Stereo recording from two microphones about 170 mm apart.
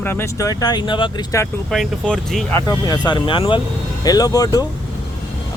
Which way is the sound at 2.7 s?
25° left (ahead or behind).